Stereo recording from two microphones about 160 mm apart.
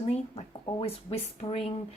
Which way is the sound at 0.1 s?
40° left (ahead or behind).